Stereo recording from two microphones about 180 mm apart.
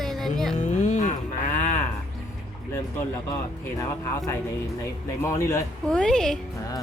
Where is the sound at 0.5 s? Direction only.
40° left (ahead or behind).